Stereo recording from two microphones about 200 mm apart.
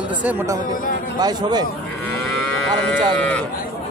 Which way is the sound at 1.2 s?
20° right (ahead or behind).